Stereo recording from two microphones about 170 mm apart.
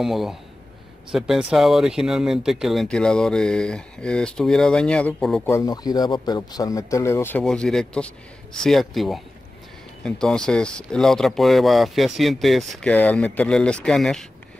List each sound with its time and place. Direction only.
0.0 s speech: centre (ahead or behind)
5.5 s speech: 20° left (ahead or behind); by 14.2 s 5° left (ahead or behind)